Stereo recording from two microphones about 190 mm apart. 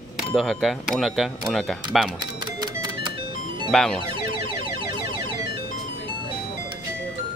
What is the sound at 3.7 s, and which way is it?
Speech, centre (ahead or behind).